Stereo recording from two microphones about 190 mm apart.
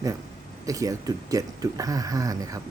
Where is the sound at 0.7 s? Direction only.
15° right (ahead or behind).